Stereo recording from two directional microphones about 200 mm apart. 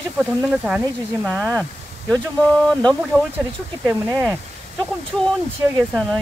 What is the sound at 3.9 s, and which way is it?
Speech, 15° right (ahead or behind).